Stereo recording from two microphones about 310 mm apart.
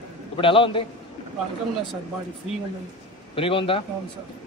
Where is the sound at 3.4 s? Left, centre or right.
Centre.